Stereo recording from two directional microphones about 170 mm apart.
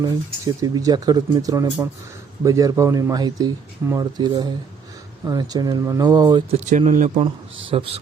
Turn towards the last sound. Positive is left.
turn(degrees=-35)  # may be behind; listen again after turning